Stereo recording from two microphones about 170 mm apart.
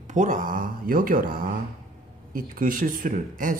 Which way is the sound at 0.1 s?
45° right (ahead or behind).